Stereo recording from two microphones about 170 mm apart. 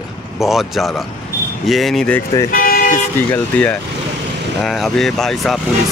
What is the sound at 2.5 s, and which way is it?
Vehicle, 55° left (ahead or behind).